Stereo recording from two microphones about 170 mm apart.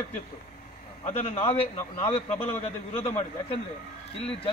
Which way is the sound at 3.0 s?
40° left (ahead or behind).